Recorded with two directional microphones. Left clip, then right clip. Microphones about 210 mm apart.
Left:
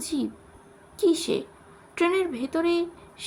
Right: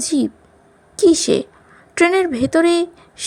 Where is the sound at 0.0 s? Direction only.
30° right (ahead or behind).